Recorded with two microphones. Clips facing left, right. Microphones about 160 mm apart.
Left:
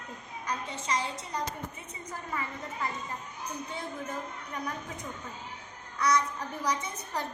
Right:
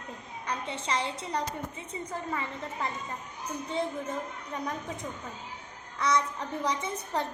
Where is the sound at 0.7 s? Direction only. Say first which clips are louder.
Right 2 dB; 30° right (ahead or behind).